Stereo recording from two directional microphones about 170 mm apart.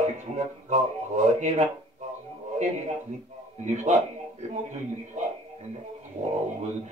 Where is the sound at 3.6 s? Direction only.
45° right (ahead or behind).